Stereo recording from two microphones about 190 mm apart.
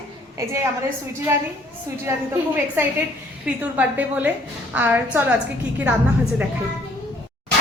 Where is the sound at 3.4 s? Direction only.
10° right (ahead or behind).